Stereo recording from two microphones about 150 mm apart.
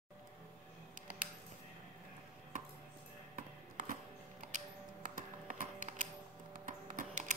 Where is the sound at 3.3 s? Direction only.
60° right (ahead or behind).